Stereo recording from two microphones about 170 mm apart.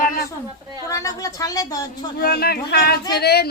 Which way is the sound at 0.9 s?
20° left (ahead or behind).